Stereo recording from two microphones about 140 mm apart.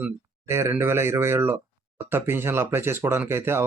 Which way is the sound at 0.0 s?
20° right (ahead or behind).